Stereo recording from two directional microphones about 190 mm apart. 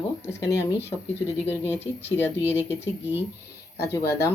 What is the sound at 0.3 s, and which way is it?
Speech, 15° left (ahead or behind).